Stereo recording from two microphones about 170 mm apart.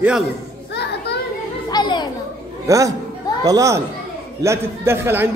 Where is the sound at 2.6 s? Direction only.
20° right (ahead or behind).